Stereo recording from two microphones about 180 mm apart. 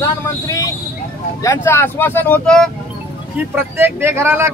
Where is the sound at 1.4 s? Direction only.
15° left (ahead or behind).